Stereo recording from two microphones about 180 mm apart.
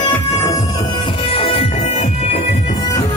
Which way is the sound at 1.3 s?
30° left (ahead or behind).